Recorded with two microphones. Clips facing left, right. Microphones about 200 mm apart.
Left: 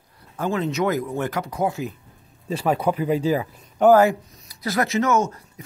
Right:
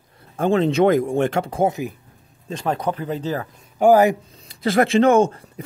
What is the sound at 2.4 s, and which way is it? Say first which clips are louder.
Speech: left 2 dB; 5° left (ahead or behind).